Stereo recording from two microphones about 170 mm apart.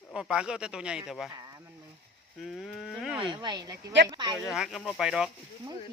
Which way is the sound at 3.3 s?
25° right (ahead or behind).